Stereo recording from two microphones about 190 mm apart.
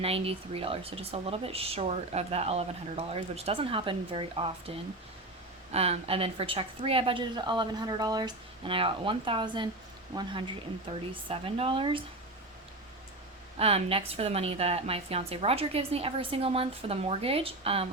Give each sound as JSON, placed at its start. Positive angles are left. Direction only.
{"t": 0.0, "sound": "speech", "side_deg": -30}
{"t": 5.7, "sound": "a woman's voice", "side_deg": -35}
{"t": 13.6, "sound": "speech", "side_deg": -30}